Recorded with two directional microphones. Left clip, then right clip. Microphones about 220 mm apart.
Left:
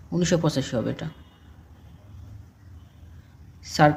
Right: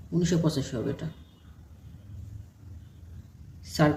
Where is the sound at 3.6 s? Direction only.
35° left (ahead or behind).